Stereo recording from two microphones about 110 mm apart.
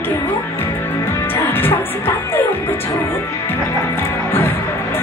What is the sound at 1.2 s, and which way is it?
Music, 20° left (ahead or behind).